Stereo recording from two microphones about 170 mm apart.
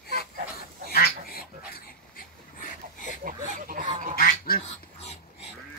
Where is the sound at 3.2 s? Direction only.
55° right (ahead or behind).